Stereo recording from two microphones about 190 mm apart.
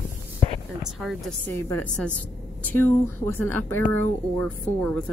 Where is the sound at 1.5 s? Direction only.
10° left (ahead or behind).